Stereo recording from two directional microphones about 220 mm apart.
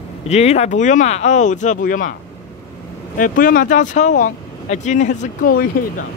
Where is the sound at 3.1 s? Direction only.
40° left (ahead or behind).